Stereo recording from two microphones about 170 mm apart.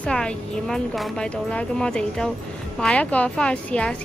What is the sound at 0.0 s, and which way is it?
Speech, 5° left (ahead or behind).